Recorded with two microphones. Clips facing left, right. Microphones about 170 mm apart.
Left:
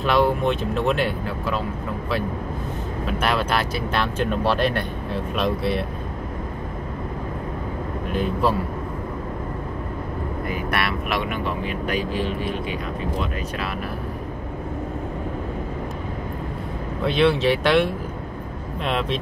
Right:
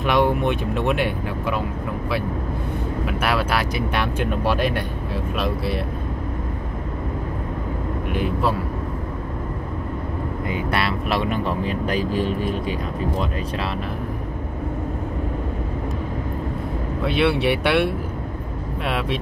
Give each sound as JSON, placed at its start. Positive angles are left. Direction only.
{"t": 0.0, "sound": "speech", "side_deg": -15}
{"t": 3.1, "sound": "speech", "side_deg": -10}
{"t": 8.1, "sound": "speech", "side_deg": -5}
{"t": 10.5, "sound": "speech", "side_deg": -25}
{"t": 17.0, "sound": "speech", "side_deg": -10}